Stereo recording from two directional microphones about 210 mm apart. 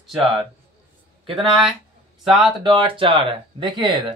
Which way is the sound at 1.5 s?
Centre (ahead or behind).